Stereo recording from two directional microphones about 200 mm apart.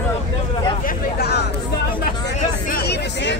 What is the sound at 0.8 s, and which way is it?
Hubbub, 55° left (ahead or behind).